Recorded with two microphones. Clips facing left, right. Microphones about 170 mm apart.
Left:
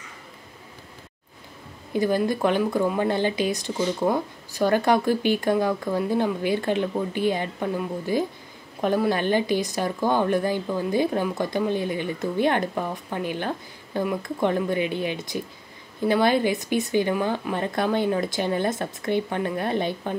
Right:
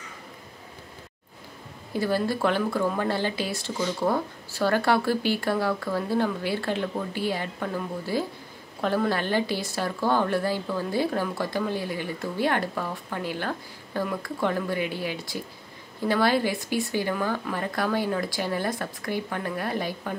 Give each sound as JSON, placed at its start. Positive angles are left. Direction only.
{"t": 2.0, "sound": "speech", "side_deg": 20}